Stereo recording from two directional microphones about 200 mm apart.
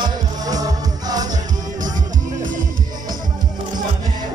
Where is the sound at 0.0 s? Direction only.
20° right (ahead or behind).